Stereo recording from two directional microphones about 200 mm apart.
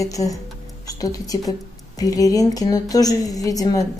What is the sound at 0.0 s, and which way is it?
Speech, 15° left (ahead or behind).